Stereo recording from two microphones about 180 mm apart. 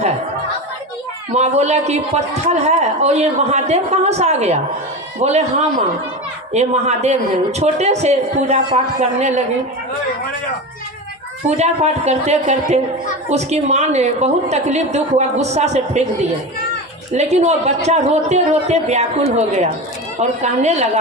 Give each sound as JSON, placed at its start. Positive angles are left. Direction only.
{"t": 1.3, "sound": "speech", "side_deg": -40}
{"t": 11.4, "sound": "speech", "side_deg": -35}
{"t": 17.2, "sound": "speech", "side_deg": -40}